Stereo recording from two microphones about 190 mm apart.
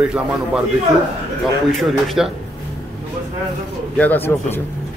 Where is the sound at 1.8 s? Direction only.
Centre (ahead or behind).